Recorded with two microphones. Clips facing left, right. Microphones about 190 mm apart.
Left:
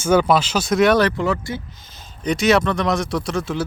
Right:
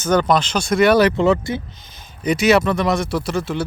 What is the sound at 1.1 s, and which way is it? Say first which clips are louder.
Speech: right 5 dB; 25° right (ahead or behind).